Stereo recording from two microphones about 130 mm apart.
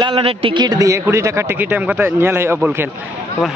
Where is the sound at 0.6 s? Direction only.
25° right (ahead or behind).